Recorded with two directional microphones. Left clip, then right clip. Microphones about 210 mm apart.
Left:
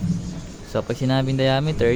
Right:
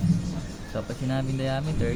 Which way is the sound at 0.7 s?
50° left (ahead or behind).